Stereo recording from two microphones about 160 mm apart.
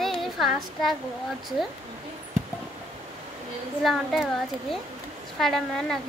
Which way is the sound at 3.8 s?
Centre (ahead or behind).